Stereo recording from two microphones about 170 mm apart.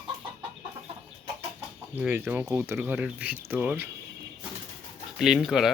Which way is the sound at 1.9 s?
10° right (ahead or behind).